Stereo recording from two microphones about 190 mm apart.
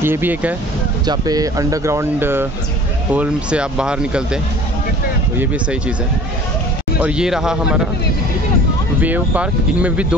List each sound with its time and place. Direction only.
0.0 s speech: 10° right (ahead or behind)
1.0 s speech: 20° right (ahead or behind); by 4.4 s 5° right (ahead or behind)
5.4 s speech: 5° right (ahead or behind)
7.0 s speech: 5° right (ahead or behind)
9.0 s speech: 10° right (ahead or behind)